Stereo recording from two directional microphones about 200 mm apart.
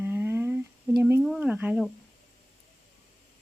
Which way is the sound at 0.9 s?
10° right (ahead or behind).